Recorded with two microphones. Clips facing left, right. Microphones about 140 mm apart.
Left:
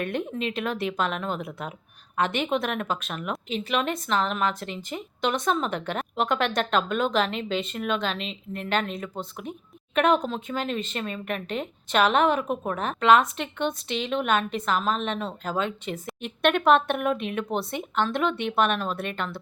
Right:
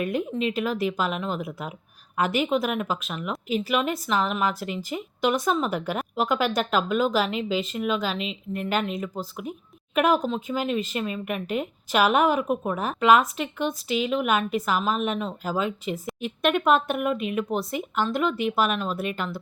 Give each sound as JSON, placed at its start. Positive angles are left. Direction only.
{"t": 0.0, "sound": "speech", "side_deg": -5}